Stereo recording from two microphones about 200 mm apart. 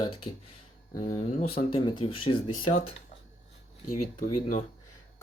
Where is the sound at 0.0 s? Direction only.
25° left (ahead or behind).